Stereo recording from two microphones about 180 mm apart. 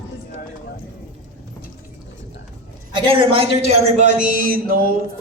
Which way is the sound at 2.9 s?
30° right (ahead or behind).